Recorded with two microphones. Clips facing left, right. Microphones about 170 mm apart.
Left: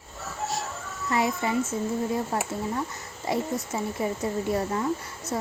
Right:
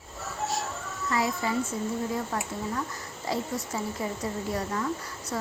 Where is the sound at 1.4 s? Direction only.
20° left (ahead or behind).